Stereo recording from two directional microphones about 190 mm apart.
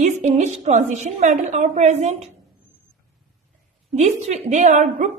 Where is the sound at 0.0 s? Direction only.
40° right (ahead or behind).